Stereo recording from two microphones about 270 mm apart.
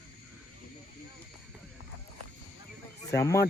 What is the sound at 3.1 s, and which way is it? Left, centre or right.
Speech, centre.